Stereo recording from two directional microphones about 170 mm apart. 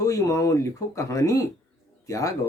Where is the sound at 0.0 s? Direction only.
20° left (ahead or behind).